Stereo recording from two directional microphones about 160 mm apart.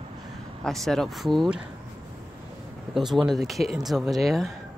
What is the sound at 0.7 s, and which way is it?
Speech, centre (ahead or behind).